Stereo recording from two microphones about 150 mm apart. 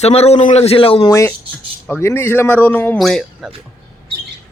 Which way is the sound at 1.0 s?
20° left (ahead or behind).